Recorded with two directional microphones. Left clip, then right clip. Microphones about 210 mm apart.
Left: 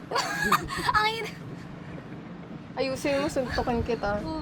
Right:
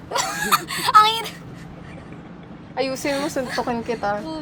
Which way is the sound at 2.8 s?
25° right (ahead or behind).